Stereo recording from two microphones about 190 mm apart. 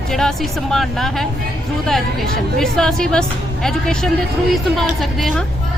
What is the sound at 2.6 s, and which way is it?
Speech, 5° left (ahead or behind).